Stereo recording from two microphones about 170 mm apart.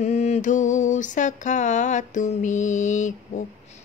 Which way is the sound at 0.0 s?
40° left (ahead or behind).